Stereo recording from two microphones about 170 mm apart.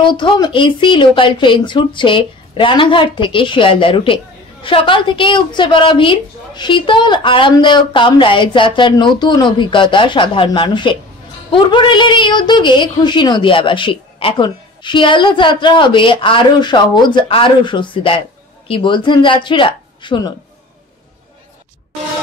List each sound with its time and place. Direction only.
0.0 s a woman's voice: 30° left (ahead or behind)